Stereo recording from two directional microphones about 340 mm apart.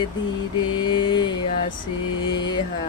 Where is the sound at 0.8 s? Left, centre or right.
Centre.